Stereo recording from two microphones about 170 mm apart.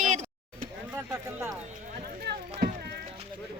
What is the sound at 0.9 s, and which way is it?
Speech, 15° right (ahead or behind).